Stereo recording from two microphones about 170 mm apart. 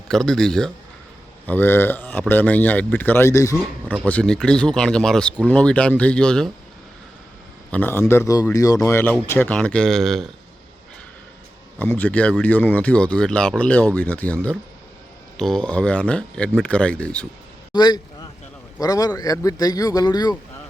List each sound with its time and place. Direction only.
0.1 s speech: 5° left (ahead or behind); by 3.9 s 20° left (ahead or behind)
4.0 s speech: 5° left (ahead or behind)
7.7 s speech: 10° left (ahead or behind)
11.8 s speech: 10° left (ahead or behind)
17.7 s a sound: 25° left (ahead or behind)
18.8 s speech: 20° left (ahead or behind)